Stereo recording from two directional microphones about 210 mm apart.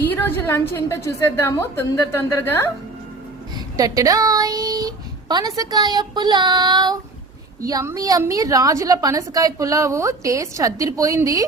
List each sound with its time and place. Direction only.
0.0 s a woman's voice: 10° left (ahead or behind)
3.8 s a woman's voice: 15° right (ahead or behind)